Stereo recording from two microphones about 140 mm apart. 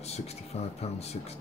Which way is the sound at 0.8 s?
50° left (ahead or behind).